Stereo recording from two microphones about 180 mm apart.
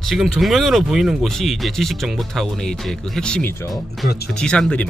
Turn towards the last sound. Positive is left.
turn(degrees=5)  # may be behind; listen again after turning